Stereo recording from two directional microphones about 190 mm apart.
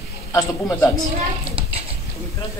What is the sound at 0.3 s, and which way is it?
Speech, 15° left (ahead or behind).